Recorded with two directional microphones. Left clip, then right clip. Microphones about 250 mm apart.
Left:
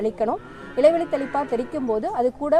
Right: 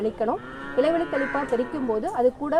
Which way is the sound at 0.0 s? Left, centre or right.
Left.